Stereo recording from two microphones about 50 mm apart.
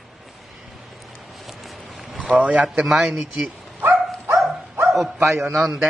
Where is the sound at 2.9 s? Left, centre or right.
Centre.